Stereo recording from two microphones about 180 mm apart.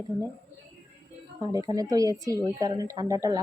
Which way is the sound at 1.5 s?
20° right (ahead or behind).